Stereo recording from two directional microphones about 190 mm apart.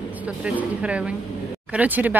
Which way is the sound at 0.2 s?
5° right (ahead or behind).